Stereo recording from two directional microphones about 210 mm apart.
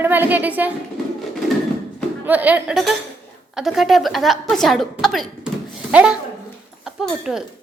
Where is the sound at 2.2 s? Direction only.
10° right (ahead or behind).